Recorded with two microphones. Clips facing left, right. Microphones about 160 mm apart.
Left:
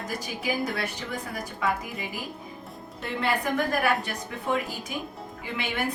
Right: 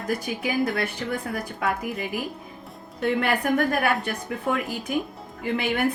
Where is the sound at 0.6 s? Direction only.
55° right (ahead or behind).